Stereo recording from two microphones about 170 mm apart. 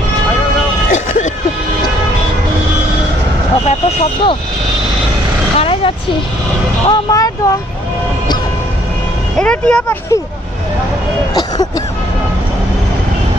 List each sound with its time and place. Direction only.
0.8 s vehicle: 50° left (ahead or behind)
3.6 s vehicle: 40° left (ahead or behind)
5.6 s vehicle: 30° left (ahead or behind)
6.9 s speech: 20° left (ahead or behind)
9.4 s speech: 5° left (ahead or behind)